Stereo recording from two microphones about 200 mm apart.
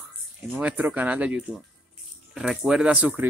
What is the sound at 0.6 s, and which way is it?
Speech, 10° right (ahead or behind).